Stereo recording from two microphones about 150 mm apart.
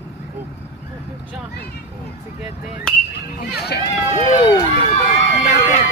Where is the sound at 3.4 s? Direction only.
90° left.